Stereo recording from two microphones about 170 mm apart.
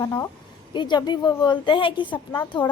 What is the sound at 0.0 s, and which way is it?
A woman's voice, 20° left (ahead or behind).